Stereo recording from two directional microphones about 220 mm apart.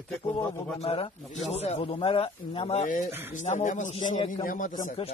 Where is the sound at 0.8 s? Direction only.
25° left (ahead or behind).